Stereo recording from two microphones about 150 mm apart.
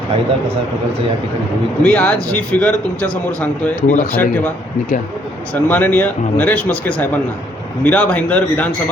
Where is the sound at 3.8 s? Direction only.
55° left (ahead or behind).